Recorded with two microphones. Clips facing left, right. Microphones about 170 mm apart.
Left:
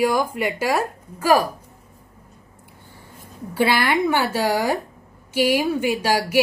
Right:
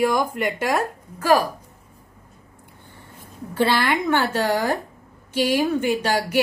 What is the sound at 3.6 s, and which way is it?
A woman's voice, 10° left (ahead or behind).